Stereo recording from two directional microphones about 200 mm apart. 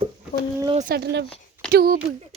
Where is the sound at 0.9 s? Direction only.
55° right (ahead or behind).